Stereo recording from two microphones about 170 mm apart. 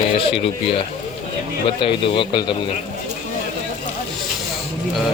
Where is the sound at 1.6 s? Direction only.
30° left (ahead or behind).